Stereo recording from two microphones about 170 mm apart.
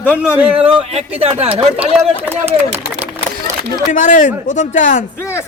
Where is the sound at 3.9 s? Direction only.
50° left (ahead or behind).